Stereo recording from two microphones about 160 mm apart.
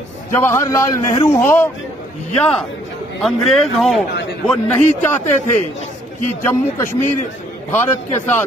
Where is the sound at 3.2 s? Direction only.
Centre (ahead or behind).